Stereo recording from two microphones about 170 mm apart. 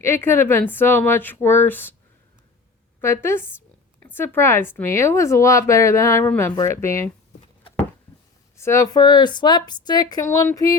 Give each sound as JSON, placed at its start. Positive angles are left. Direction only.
{"t": 0.0, "sound": "speech", "side_deg": 15}
{"t": 3.0, "sound": "speech", "side_deg": 15}
{"t": 8.5, "sound": "a woman's voice", "side_deg": 15}